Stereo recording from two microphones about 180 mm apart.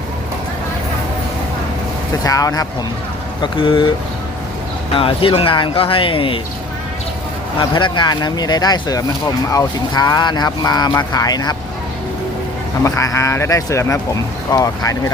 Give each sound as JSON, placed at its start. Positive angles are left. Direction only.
{"t": 2.2, "sound": "speech", "side_deg": 20}
{"t": 4.9, "sound": "speech", "side_deg": 30}
{"t": 7.6, "sound": "speech", "side_deg": 25}
{"t": 12.8, "sound": "speech", "side_deg": 15}